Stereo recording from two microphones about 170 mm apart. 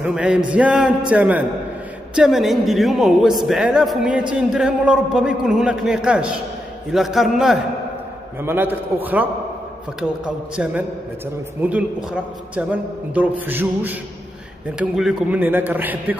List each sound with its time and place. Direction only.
0.0 s a man's voice: 5° right (ahead or behind)
8.4 s a man's voice: 10° right (ahead or behind)